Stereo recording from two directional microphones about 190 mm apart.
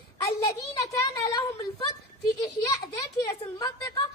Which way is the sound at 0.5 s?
15° left (ahead or behind).